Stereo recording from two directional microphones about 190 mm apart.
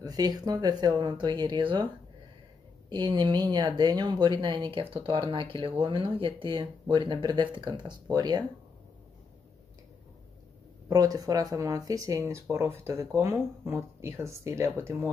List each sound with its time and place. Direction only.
0.0 s speech: 20° right (ahead or behind)
2.9 s speech: 25° right (ahead or behind)
10.9 s speech: 20° right (ahead or behind)